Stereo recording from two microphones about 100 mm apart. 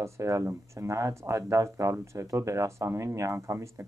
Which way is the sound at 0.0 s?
30° right (ahead or behind).